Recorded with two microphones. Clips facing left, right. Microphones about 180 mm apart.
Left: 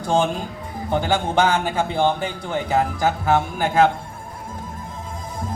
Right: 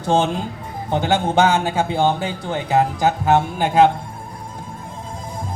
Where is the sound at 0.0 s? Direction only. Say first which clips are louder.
Right 2 dB; 20° right (ahead or behind).